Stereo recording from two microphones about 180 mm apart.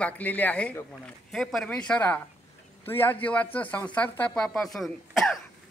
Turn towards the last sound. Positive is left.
turn(degrees=0)  # may be behind; listen again after turning